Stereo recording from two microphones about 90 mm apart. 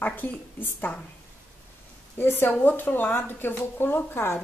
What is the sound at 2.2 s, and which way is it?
Speech, 25° left (ahead or behind).